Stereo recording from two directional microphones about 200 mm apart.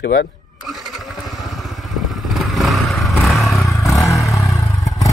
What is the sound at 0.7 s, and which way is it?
Motorcycle, centre (ahead or behind).